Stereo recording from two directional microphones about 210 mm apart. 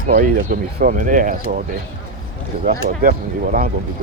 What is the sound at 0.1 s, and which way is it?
Speech, 40° right (ahead or behind).